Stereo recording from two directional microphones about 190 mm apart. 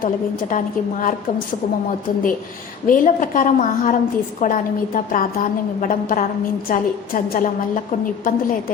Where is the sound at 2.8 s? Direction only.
45° left (ahead or behind).